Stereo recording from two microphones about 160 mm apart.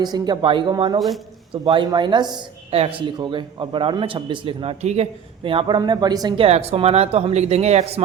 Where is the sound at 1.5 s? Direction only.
30° right (ahead or behind).